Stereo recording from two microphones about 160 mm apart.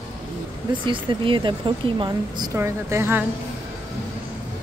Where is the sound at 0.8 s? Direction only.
30° right (ahead or behind); by 3.2 s 15° right (ahead or behind).